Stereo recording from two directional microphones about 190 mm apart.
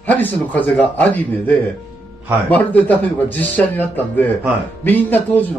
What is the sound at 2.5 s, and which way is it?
Speech, 10° left (ahead or behind).